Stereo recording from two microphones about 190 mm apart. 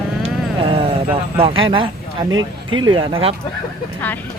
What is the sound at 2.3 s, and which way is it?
Speech, 90° right.